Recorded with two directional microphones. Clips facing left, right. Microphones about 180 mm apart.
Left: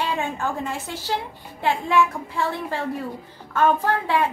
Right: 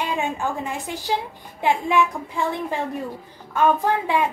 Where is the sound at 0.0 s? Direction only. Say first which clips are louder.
Right 1 dB; 15° right (ahead or behind).